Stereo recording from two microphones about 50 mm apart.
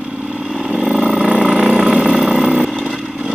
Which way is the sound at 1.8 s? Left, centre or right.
Centre.